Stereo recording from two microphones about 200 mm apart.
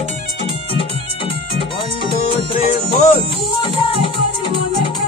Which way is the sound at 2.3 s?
25° left (ahead or behind).